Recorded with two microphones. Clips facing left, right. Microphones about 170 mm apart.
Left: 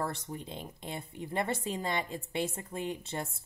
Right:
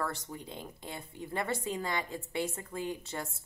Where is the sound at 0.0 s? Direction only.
25° left (ahead or behind).